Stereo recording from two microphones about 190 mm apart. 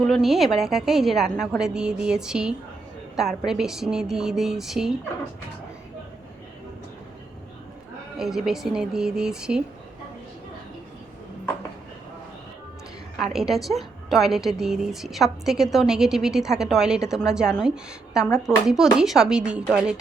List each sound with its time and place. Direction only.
0.0 s a woman's voice: centre (ahead or behind)
8.2 s a woman's voice: centre (ahead or behind)
13.1 s a woman's voice: centre (ahead or behind)